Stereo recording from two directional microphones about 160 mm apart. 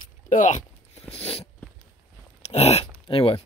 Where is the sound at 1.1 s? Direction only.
35° left (ahead or behind).